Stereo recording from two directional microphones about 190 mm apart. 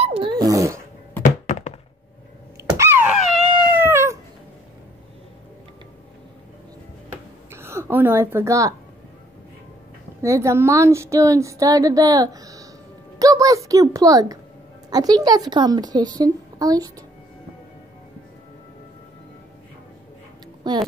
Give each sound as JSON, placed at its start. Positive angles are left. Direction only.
{"t": 0.0, "sound": "dog", "side_deg": -30}
{"t": 1.2, "sound": "thunk", "side_deg": 40}
{"t": 2.8, "sound": "a sound", "side_deg": -10}
{"t": 3.6, "sound": "cat", "side_deg": -10}
{"t": 7.5, "sound": "a woman's voice", "side_deg": -15}
{"t": 10.2, "sound": "a woman's voice", "side_deg": -15}
{"t": 20.7, "sound": "speech", "side_deg": -20}